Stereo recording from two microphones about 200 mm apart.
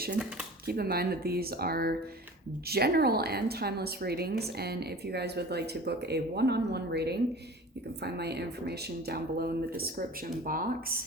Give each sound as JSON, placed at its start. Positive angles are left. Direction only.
{"t": 0.2, "sound": "speech", "side_deg": -5}
{"t": 0.6, "sound": "a woman's voice", "side_deg": -50}